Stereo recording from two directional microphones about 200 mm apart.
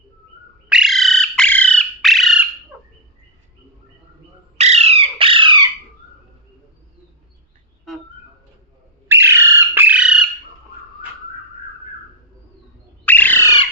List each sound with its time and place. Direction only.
0.7 s bird: centre (ahead or behind)
4.5 s bird: 35° right (ahead or behind)
9.0 s bird: 10° right (ahead or behind)
13.1 s bird: 10° left (ahead or behind)